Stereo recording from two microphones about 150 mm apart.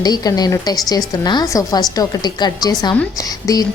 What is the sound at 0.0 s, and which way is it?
A woman's voice, 25° left (ahead or behind).